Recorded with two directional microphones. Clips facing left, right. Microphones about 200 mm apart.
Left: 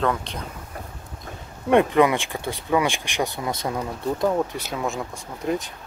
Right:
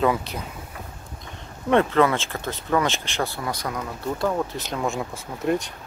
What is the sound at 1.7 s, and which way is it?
Speech, 15° left (ahead or behind).